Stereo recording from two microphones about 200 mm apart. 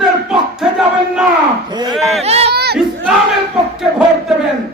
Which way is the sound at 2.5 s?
55° right (ahead or behind).